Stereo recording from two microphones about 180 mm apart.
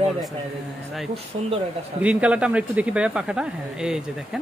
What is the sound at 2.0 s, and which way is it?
Speech, 5° right (ahead or behind).